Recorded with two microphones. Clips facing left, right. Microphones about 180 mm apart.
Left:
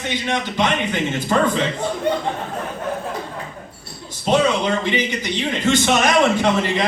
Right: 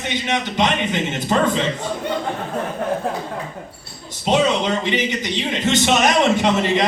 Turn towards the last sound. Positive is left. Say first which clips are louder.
# right 1 dB
turn(degrees=-20)  # may be behind; listen again after turning